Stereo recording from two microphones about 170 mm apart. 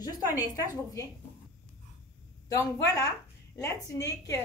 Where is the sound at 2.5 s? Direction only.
20° left (ahead or behind).